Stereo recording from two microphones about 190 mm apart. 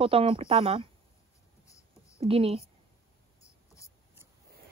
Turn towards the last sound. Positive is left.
turn(degrees=15)  # may be behind; listen again after turning